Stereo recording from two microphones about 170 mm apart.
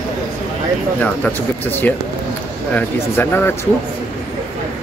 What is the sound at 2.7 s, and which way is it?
Speech, 15° left (ahead or behind).